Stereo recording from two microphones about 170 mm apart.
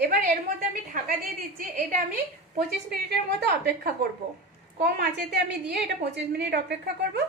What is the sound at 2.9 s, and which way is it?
A woman's voice, 70° right (ahead or behind).